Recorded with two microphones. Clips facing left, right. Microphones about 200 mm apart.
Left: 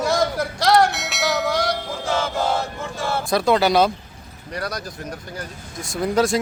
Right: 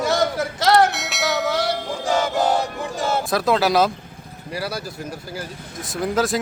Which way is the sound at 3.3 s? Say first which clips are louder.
Left 2 dB; centre (ahead or behind).